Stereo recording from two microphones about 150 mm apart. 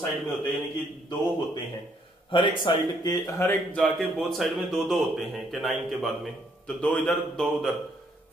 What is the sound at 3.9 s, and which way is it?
A man's voice, centre (ahead or behind).